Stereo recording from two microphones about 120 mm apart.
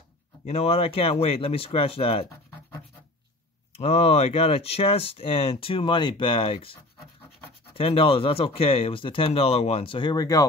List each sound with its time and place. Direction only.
0.5 s speech: 55° left (ahead or behind)
3.7 s speech: 60° left (ahead or behind); by 10.4 s 30° left (ahead or behind)